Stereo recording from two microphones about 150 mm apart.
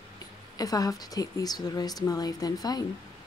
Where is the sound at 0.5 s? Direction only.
25° left (ahead or behind).